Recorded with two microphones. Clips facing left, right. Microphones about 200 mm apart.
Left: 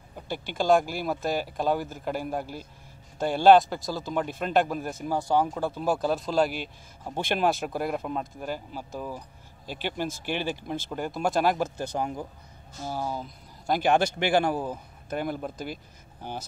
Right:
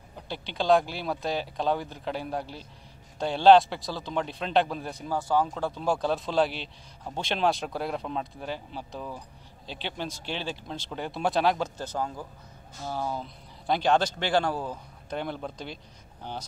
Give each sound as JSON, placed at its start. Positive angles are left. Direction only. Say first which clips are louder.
{"t": 0.3, "sound": "speech", "louder": "left 1 dB", "side_deg": 50}
{"t": 1.2, "sound": "speech", "louder": "left 1 dB", "side_deg": 5}